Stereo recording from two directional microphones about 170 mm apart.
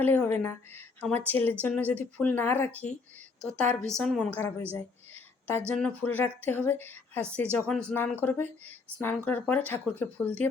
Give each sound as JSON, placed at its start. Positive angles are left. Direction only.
{"t": 0.0, "sound": "a woman's voice", "side_deg": 10}
{"t": 4.4, "sound": "speech", "side_deg": 15}